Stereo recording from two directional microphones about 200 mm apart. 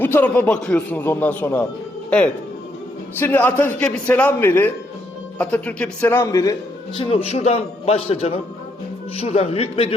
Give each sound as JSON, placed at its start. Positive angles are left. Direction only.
{"t": 0.0, "sound": "a man's voice", "side_deg": 10}